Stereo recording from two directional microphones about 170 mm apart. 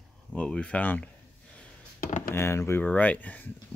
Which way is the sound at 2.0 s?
55° left (ahead or behind).